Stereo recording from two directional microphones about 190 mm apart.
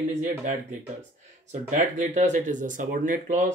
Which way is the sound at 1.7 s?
40° right (ahead or behind).